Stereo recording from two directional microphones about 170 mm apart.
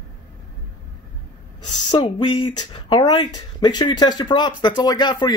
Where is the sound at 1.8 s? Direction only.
30° left (ahead or behind).